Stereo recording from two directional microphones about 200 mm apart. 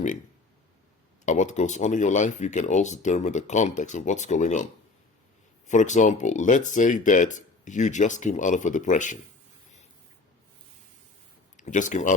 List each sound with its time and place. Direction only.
1.2 s speech: 35° left (ahead or behind)
5.6 s speech: 40° left (ahead or behind)
11.5 s speech: 40° left (ahead or behind)